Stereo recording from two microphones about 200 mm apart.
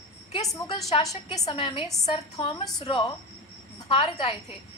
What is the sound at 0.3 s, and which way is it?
A woman's voice, 20° left (ahead or behind).